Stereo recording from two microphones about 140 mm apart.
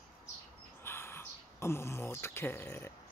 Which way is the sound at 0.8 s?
15° left (ahead or behind).